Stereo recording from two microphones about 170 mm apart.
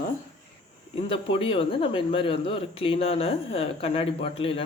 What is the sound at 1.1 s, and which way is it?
Speech, 30° left (ahead or behind).